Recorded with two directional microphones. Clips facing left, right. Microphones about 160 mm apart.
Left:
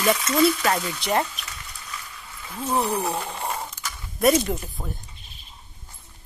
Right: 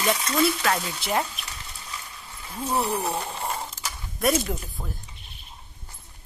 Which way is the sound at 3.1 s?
20° right (ahead or behind).